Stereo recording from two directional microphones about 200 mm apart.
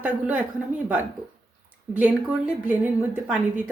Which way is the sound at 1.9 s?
5° right (ahead or behind).